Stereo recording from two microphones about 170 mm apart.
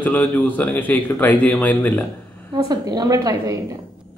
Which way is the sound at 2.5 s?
25° right (ahead or behind).